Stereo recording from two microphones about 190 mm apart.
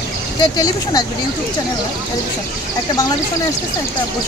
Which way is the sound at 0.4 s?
20° left (ahead or behind).